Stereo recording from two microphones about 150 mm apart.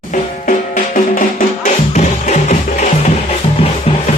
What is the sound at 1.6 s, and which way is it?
Music, 55° left (ahead or behind).